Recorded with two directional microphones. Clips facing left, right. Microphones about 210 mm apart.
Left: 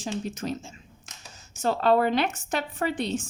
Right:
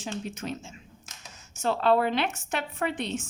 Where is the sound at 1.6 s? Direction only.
40° left (ahead or behind).